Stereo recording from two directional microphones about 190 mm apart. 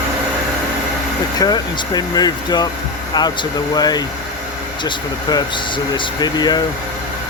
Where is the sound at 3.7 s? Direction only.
20° left (ahead or behind).